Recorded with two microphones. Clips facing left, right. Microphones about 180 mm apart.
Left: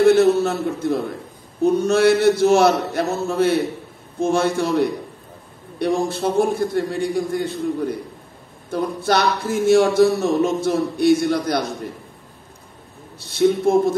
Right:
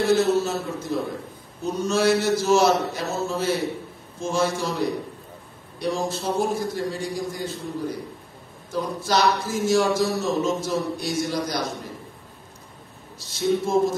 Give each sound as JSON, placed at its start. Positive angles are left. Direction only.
{"t": 0.0, "sound": "a man's voice", "side_deg": 60}
{"t": 13.2, "sound": "a man's voice", "side_deg": 60}